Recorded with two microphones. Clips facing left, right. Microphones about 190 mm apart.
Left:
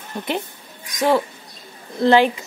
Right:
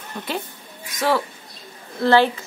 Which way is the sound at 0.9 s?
15° left (ahead or behind).